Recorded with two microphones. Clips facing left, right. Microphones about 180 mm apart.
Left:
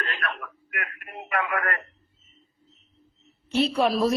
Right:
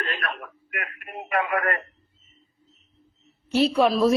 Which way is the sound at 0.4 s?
30° right (ahead or behind).